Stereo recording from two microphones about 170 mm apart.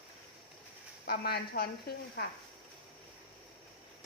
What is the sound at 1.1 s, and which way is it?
Speech, 70° left (ahead or behind).